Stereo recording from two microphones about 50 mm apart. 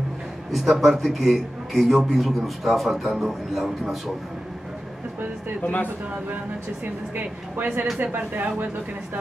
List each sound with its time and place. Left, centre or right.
0.5 s a man's voice: centre
5.6 s speech: left
7.2 s speech: right